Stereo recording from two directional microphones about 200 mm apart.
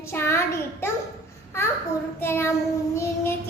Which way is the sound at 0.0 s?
10° left (ahead or behind).